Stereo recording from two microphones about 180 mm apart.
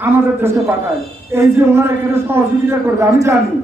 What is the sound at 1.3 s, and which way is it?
A man's voice, 15° right (ahead or behind).